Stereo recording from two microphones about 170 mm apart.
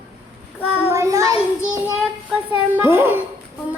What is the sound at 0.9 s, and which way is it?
Child singing, 15° right (ahead or behind).